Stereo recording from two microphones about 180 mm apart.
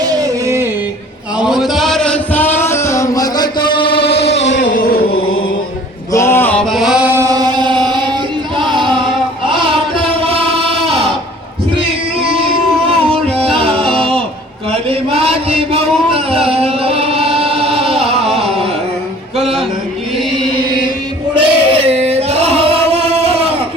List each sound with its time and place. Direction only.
0.0 s a sound: 20° right (ahead or behind)
1.4 s a sound: 5° right (ahead or behind); by 4.0 s 25° left (ahead or behind)
4.1 s music: 35° left (ahead or behind)
4.4 s music: 90° left
4.7 s music: 55° left (ahead or behind)
6.1 s chant: 15° left (ahead or behind); by 8.1 s 25° right (ahead or behind)
8.5 s a sound: 25° right (ahead or behind)
13.3 s music: 30° right (ahead or behind)
14.7 s chant: 30° right (ahead or behind)
18.2 s carnatic music: 35° right (ahead or behind)
21.3 s singing: 30° right (ahead or behind)